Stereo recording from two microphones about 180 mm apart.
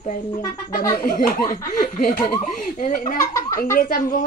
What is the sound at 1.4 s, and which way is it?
Speech, 20° left (ahead or behind).